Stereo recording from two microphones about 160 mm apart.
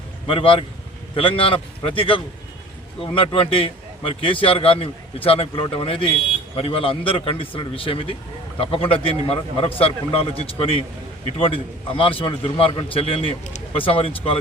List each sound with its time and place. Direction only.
0.3 s a man's voice: 35° left (ahead or behind)